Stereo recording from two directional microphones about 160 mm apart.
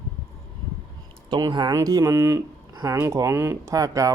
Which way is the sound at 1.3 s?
25° right (ahead or behind).